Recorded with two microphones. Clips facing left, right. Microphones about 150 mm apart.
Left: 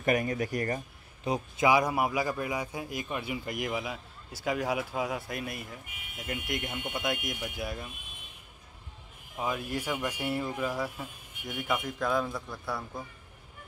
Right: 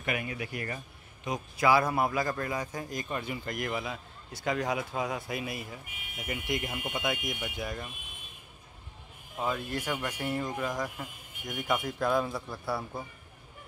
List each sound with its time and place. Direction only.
0.0 s speech: 40° left (ahead or behind)
1.6 s a man's voice: 15° left (ahead or behind)
9.4 s a man's voice: 10° left (ahead or behind)